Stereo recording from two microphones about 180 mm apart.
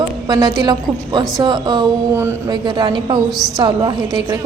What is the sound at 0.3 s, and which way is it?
A woman's voice, 25° right (ahead or behind).